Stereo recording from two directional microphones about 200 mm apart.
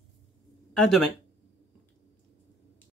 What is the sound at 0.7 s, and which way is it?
Speech, centre (ahead or behind).